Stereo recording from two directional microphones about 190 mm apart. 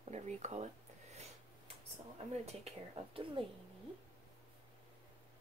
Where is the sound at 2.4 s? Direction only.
35° right (ahead or behind).